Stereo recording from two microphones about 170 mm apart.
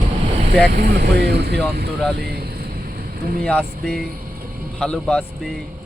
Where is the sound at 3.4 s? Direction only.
5° left (ahead or behind).